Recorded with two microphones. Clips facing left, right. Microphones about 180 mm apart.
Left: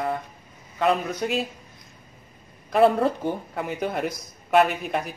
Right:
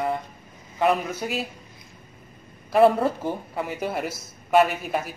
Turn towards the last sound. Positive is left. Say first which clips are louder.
# even
turn(degrees=-5)  # may be behind; listen again after turning